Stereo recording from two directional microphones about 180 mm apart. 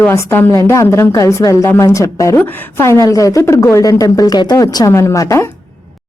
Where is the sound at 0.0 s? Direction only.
15° left (ahead or behind).